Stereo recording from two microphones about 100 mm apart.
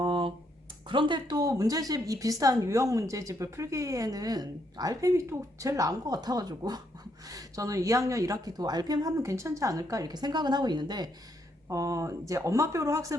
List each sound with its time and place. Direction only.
0.0 s a sound: 55° right (ahead or behind)
0.9 s a woman's voice: 55° right (ahead or behind)
11.7 s a woman's voice: 35° right (ahead or behind)